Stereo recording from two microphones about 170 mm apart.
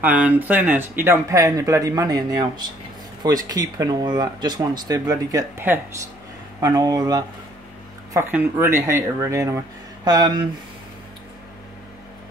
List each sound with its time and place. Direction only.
0.0 s speech: 10° right (ahead or behind)